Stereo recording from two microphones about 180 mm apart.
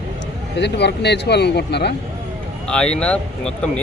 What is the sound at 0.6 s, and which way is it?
Speech, 70° left (ahead or behind).